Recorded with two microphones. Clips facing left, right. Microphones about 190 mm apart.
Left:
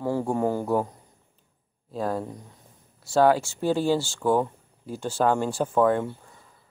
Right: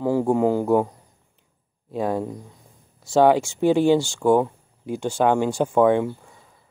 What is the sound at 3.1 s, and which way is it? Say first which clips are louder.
Speech: right 3 dB; 20° right (ahead or behind).